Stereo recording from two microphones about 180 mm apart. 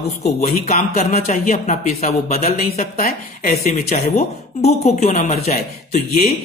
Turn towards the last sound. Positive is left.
turn(degrees=40)  # may be behind; listen again after turning